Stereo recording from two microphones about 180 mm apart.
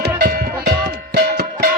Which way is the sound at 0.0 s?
60° right (ahead or behind).